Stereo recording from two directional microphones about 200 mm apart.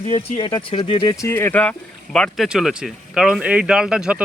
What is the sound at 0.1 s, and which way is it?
Speech, 30° left (ahead or behind).